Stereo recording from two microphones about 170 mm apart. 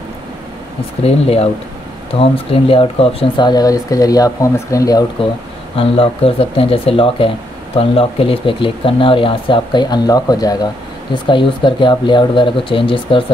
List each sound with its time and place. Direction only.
1.0 s speech: 35° left (ahead or behind); by 5.0 s 20° left (ahead or behind)
5.8 s speech: 35° left (ahead or behind)